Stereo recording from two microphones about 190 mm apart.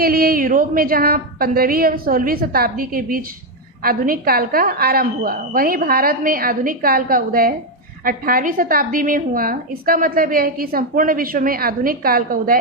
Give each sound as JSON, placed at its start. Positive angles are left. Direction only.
{"t": 0.0, "sound": "a woman's voice", "side_deg": -50}